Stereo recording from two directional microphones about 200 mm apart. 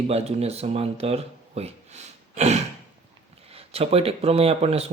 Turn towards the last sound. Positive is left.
turn(degrees=-30)  # may be behind; listen again after turning